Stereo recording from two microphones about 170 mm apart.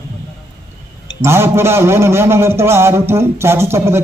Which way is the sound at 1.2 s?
15° right (ahead or behind).